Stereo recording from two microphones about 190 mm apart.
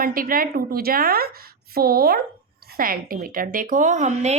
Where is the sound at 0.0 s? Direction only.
50° right (ahead or behind).